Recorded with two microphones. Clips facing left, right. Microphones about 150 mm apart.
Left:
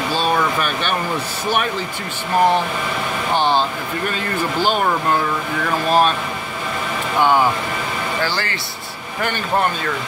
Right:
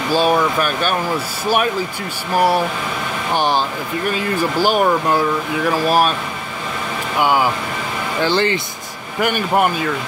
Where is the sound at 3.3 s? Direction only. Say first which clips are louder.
Even; 10° right (ahead or behind).